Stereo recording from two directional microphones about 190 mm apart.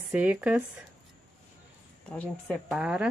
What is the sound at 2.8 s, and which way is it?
Speech, 5° right (ahead or behind).